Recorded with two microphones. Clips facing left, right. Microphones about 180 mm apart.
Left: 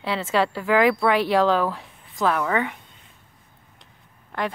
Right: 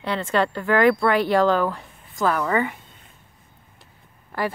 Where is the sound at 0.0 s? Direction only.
5° left (ahead or behind).